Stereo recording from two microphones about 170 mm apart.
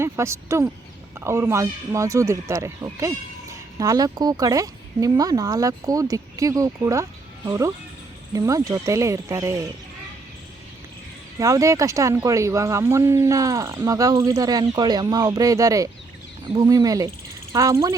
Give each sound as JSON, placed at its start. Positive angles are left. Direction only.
{"t": 0.0, "sound": "speech", "side_deg": -15}
{"t": 11.3, "sound": "speech", "side_deg": -20}